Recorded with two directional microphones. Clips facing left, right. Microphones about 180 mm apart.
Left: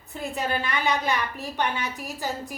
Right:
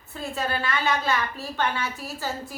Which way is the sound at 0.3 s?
15° left (ahead or behind).